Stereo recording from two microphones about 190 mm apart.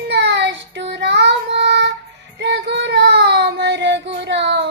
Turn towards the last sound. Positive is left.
turn(degrees=-65)  # may be behind; listen again after turning